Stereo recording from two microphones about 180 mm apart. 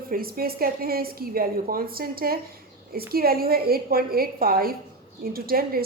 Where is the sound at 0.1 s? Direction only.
55° right (ahead or behind).